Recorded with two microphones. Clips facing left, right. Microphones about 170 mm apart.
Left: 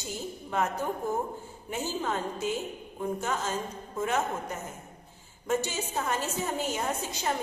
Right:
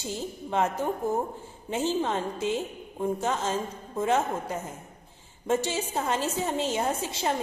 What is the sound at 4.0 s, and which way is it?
Speech, 30° right (ahead or behind).